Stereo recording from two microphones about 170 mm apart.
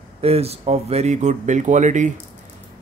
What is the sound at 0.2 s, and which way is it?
Speech, 35° right (ahead or behind).